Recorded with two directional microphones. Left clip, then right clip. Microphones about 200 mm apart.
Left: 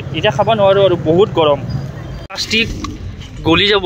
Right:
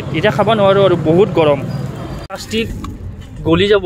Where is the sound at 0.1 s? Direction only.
10° right (ahead or behind).